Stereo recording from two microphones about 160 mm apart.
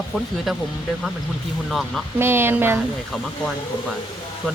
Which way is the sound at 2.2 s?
15° right (ahead or behind).